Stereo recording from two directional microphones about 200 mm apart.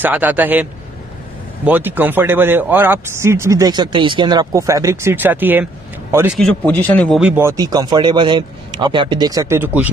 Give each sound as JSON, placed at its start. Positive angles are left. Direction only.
{"t": 0.0, "sound": "speech", "side_deg": -10}
{"t": 1.7, "sound": "speech", "side_deg": -10}
{"t": 6.4, "sound": "a man's voice", "side_deg": 5}
{"t": 7.2, "sound": "speech", "side_deg": -10}